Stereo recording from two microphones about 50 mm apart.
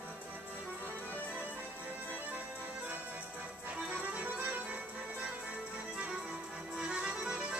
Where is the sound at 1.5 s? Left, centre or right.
Right.